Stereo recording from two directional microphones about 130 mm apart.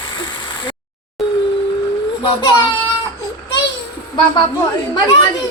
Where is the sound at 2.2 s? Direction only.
35° left (ahead or behind).